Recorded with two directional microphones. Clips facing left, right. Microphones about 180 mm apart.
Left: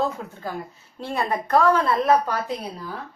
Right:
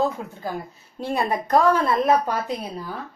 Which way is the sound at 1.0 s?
15° right (ahead or behind).